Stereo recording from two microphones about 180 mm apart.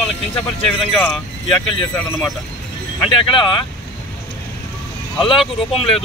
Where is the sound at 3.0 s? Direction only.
30° left (ahead or behind).